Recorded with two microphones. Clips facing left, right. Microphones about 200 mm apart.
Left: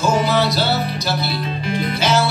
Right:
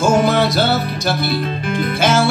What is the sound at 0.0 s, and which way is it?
Music, 50° right (ahead or behind).